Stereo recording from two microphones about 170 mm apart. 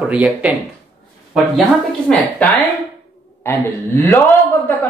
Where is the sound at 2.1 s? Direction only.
5° left (ahead or behind).